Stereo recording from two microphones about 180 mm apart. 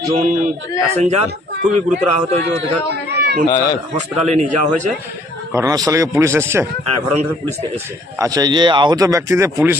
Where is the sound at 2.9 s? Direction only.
65° right (ahead or behind).